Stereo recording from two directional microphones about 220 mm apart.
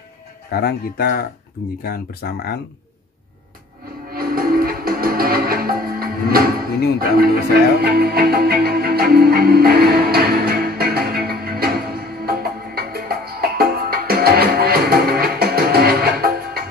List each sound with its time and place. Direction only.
0.5 s speech: 45° left (ahead or behind)
4.1 s music: 40° right (ahead or behind)
7.0 s speech: 45° right (ahead or behind)
7.8 s music: 45° right (ahead or behind)